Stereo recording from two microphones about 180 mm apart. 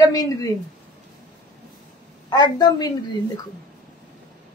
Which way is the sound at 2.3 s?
20° left (ahead or behind).